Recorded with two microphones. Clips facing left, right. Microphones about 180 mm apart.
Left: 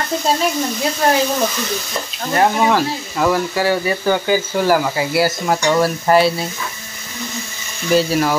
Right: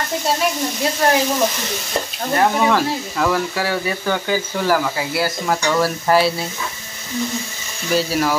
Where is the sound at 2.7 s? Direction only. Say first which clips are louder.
Left 1 dB; 5° left (ahead or behind).